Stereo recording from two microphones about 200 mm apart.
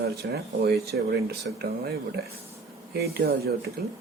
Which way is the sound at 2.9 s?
50° right (ahead or behind).